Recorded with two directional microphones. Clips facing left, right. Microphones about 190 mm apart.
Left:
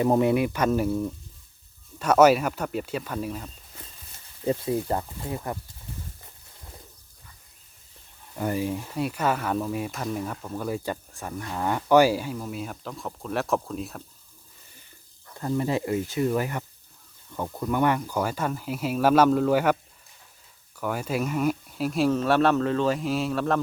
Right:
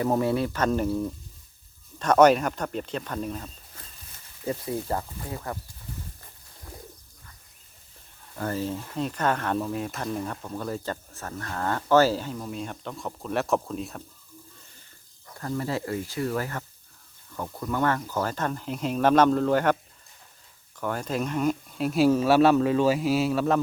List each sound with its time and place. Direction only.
0.0 s speech: 20° left (ahead or behind)
2.0 s speech: 5° left (ahead or behind)
4.4 s speech: 20° left (ahead or behind)
8.4 s speech: 15° left (ahead or behind)
15.4 s speech: 20° left (ahead or behind)
20.7 s speech: 5° left (ahead or behind)